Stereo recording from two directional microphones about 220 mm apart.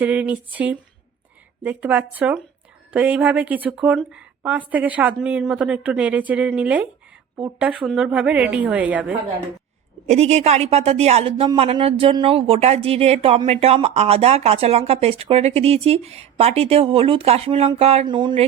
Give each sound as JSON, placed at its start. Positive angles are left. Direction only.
{"t": 0.0, "sound": "a woman's voice", "side_deg": -5}
{"t": 10.1, "sound": "a woman's voice", "side_deg": -30}